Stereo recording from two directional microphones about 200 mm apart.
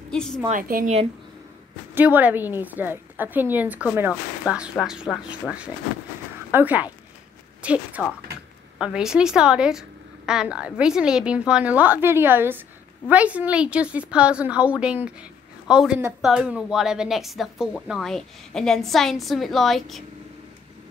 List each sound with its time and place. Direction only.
0.1 s a woman's voice: 5° left (ahead or behind)
0.5 s a woman's voice: 45° right (ahead or behind)
2.0 s a woman's voice: 10° right (ahead or behind)